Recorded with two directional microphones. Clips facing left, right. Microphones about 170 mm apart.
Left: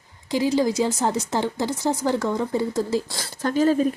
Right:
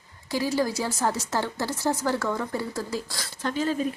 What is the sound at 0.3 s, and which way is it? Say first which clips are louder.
A woman's voice: left 5 dB; 20° left (ahead or behind).